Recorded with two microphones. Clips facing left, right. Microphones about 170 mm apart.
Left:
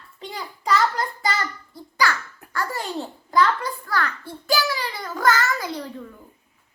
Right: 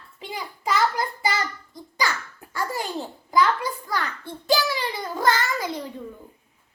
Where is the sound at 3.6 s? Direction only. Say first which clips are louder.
Left 2 dB; 15° right (ahead or behind).